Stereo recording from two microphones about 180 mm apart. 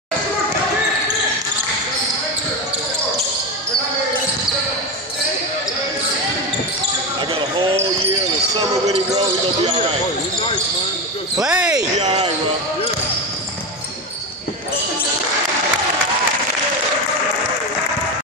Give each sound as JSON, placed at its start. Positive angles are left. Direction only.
{"t": 7.3, "sound": "basketball bounce", "side_deg": -35}
{"t": 11.4, "sound": "basketball bounce", "side_deg": -5}
{"t": 12.0, "sound": "basketball bounce", "side_deg": -40}